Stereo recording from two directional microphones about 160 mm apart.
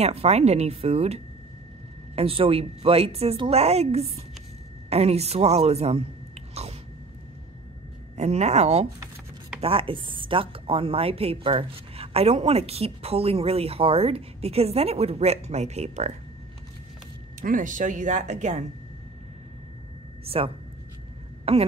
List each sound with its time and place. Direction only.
0.0 s speech: 40° right (ahead or behind)
8.2 s speech: 45° right (ahead or behind)
17.4 s speech: 55° right (ahead or behind)
20.2 s speech: 35° right (ahead or behind)